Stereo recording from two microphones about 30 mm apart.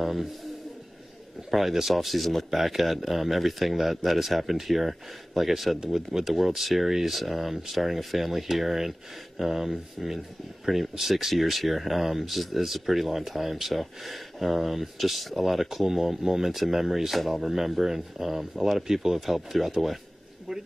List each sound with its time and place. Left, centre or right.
0.0 s a man's voice: centre
1.5 s speech: centre